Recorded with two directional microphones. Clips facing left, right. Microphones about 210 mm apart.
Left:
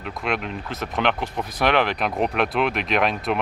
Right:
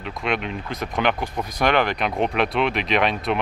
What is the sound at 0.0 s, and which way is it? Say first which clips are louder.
Speech: right 1 dB; centre (ahead or behind).